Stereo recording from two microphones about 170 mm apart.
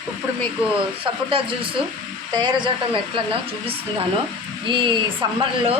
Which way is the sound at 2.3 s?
25° right (ahead or behind).